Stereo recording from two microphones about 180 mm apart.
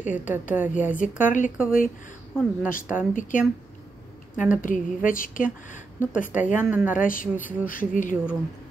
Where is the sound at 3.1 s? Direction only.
45° left (ahead or behind).